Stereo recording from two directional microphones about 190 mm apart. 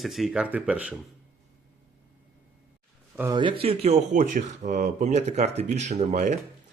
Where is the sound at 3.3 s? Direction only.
25° right (ahead or behind).